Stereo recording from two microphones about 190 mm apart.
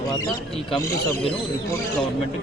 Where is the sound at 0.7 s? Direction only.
15° left (ahead or behind).